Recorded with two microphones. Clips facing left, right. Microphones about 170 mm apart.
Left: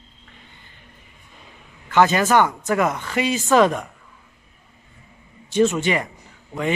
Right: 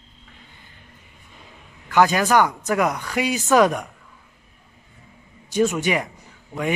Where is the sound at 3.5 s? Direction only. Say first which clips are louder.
Even; 5° right (ahead or behind).